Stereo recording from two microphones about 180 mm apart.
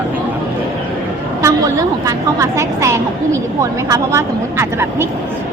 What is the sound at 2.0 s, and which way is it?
A woman's voice, 15° right (ahead or behind).